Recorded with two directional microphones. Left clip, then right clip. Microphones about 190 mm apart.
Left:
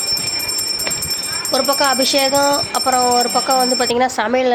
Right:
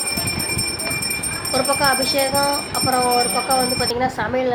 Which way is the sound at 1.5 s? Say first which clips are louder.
Left 3 dB; 45° left (ahead or behind).